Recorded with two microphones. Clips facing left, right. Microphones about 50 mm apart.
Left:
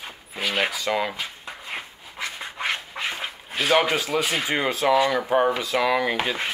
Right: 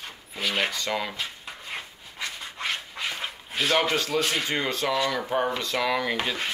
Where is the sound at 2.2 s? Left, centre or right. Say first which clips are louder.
Left 3 dB; left.